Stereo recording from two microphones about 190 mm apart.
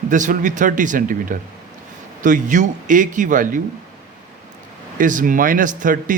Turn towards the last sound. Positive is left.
turn(degrees=-45)  # may be behind; listen again after turning